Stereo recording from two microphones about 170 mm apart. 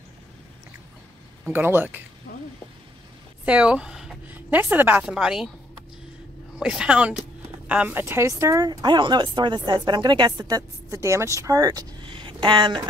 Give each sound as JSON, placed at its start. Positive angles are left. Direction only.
{"t": 1.4, "sound": "speech", "side_deg": -10}
{"t": 2.3, "sound": "a sound", "side_deg": 55}
{"t": 3.4, "sound": "a woman's voice", "side_deg": -5}
{"t": 6.6, "sound": "speech", "side_deg": -5}